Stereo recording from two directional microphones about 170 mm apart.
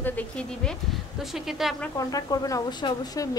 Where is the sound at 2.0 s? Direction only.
20° left (ahead or behind).